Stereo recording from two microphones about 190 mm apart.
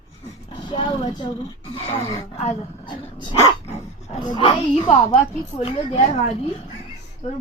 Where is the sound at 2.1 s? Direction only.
30° left (ahead or behind).